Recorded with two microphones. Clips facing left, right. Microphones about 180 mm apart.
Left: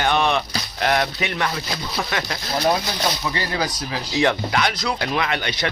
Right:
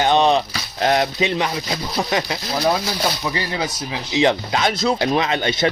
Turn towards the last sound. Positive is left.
turn(degrees=-25)  # may be behind; listen again after turning